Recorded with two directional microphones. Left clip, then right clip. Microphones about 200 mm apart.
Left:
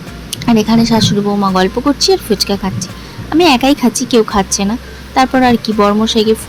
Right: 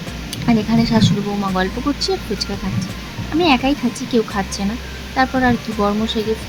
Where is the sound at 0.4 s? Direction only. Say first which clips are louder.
Left 6 dB; 30° left (ahead or behind).